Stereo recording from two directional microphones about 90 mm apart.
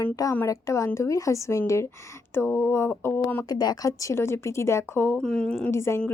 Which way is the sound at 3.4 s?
45° left (ahead or behind).